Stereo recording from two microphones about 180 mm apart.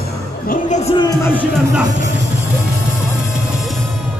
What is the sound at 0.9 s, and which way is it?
Speech, 20° left (ahead or behind).